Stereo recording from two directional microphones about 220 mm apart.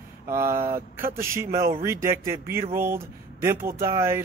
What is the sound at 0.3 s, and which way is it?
Speech, 10° right (ahead or behind).